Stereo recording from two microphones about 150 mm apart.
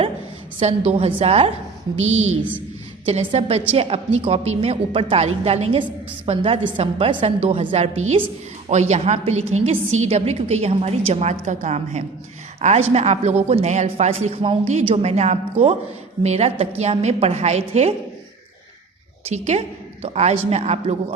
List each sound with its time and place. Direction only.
0.6 s a woman's voice: 45° right (ahead or behind)
8.7 s a woman's voice: 50° right (ahead or behind)
19.2 s a woman's voice: 45° right (ahead or behind)